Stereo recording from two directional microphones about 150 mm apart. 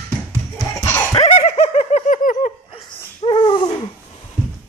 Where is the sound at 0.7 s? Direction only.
15° left (ahead or behind).